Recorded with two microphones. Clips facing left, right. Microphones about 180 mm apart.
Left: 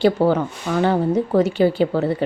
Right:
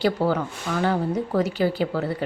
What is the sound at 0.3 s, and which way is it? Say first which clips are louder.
Speech: left 5 dB; 25° left (ahead or behind).